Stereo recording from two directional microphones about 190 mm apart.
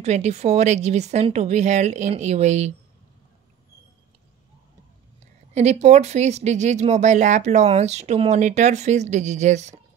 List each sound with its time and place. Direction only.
0.0 s speech: 35° right (ahead or behind)
5.5 s speech: 35° right (ahead or behind)